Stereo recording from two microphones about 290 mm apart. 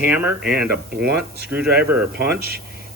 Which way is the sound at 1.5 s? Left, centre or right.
Centre.